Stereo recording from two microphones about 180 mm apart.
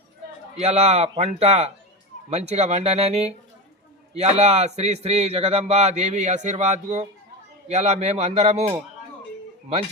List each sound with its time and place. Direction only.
0.5 s speech: 35° right (ahead or behind)